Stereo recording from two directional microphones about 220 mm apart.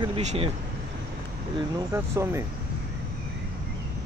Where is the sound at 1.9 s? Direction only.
10° right (ahead or behind).